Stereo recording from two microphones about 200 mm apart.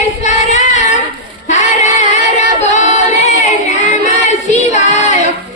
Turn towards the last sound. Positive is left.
turn(degrees=35)  # may be behind; listen again after turning